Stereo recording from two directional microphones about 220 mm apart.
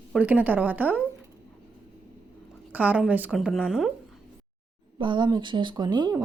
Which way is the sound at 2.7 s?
5° right (ahead or behind).